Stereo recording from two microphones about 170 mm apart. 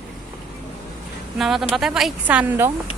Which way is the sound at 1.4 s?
Centre (ahead or behind).